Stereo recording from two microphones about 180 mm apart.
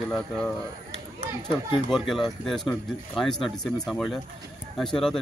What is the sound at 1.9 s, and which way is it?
A man's voice, centre (ahead or behind).